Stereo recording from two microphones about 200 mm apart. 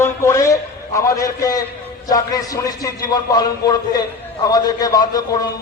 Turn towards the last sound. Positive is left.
turn(degrees=20)  # may be behind; listen again after turning